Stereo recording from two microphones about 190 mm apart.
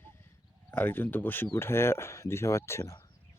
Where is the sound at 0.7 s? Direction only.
10° left (ahead or behind).